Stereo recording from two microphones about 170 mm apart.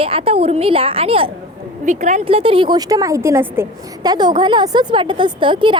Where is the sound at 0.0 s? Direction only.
35° right (ahead or behind).